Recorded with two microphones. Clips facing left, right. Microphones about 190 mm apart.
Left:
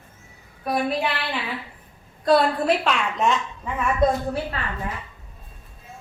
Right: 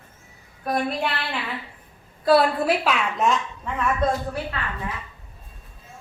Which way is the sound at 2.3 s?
5° right (ahead or behind).